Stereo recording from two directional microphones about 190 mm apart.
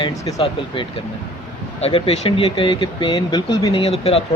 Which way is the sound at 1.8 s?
30° left (ahead or behind).